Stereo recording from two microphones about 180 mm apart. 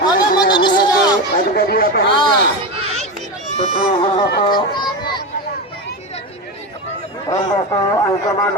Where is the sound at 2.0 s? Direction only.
25° left (ahead or behind).